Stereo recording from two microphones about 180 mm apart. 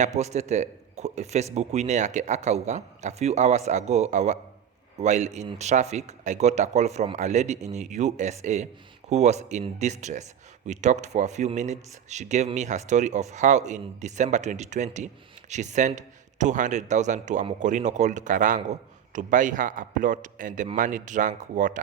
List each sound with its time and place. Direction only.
0.0 s a man's voice: 40° right (ahead or behind)